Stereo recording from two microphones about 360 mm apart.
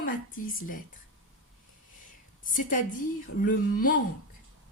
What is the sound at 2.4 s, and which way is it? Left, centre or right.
A woman's voice, left.